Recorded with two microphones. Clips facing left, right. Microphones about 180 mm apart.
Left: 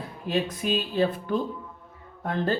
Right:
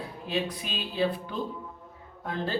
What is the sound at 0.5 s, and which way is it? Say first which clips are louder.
Speech: left 9 dB; 45° left (ahead or behind).